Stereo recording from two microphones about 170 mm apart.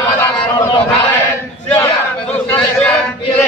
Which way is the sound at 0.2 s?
25° left (ahead or behind).